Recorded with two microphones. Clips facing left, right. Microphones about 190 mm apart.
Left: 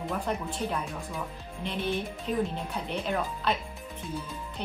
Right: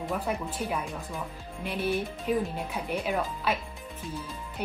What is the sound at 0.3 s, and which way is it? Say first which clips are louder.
Speech: even; 5° right (ahead or behind).